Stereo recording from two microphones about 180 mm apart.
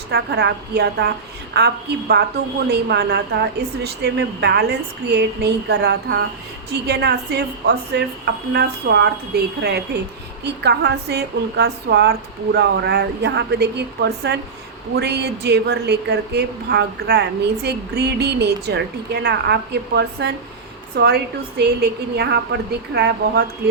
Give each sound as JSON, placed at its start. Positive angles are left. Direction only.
{"t": 0.1, "sound": "a woman's voice", "side_deg": -70}